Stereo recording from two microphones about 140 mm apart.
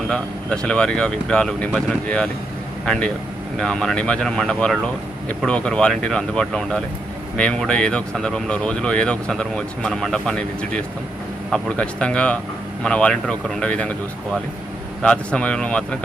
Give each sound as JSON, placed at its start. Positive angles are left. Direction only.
{"t": 0.1, "sound": "speech", "side_deg": 5}
{"t": 15.0, "sound": "speech", "side_deg": 10}